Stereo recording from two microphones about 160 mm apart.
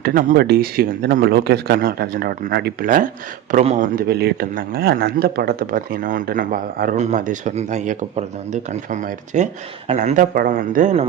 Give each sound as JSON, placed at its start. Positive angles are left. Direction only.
{"t": 0.0, "sound": "speech", "side_deg": -60}
{"t": 3.5, "sound": "speech", "side_deg": -45}
{"t": 3.9, "sound": "speech", "side_deg": -80}
{"t": 6.9, "sound": "speech", "side_deg": -45}